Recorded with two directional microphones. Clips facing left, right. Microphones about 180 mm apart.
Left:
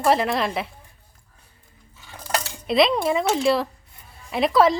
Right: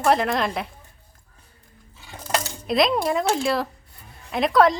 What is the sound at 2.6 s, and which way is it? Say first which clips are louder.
A woman's voice: left 2 dB; centre (ahead or behind).